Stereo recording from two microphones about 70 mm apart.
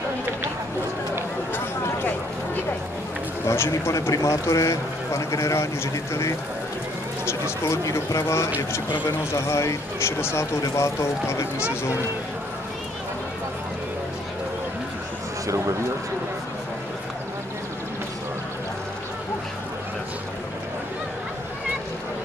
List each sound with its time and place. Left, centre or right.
1.5 s a sound: left
3.4 s speech: left
7.2 s speech: left
15.4 s speech: right